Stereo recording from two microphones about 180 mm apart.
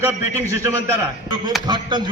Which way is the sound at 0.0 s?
15° right (ahead or behind).